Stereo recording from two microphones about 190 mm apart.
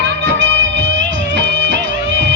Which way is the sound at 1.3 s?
70° right (ahead or behind).